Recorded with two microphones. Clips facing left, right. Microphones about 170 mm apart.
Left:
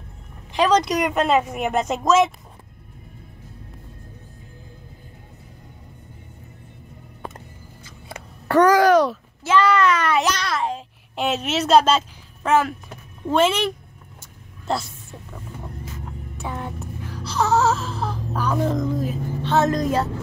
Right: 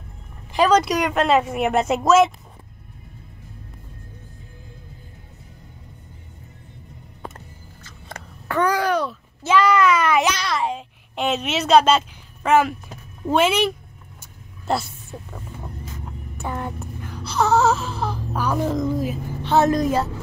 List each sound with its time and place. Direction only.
0.5 s speech: 5° right (ahead or behind)
7.3 s music: 10° left (ahead or behind)
8.5 s babbling: 45° left (ahead or behind)
8.7 s a sound: 90° left
9.4 s a child's voice: 15° right (ahead or behind)
13.3 s speech: 10° right (ahead or behind)
16.3 s wail: centre (ahead or behind)